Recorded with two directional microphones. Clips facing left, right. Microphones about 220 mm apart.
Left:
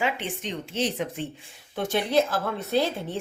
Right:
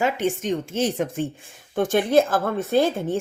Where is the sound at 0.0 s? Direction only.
45° right (ahead or behind).